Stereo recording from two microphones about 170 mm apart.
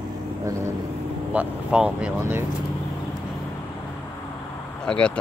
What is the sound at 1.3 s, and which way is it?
Speech, 5° right (ahead or behind).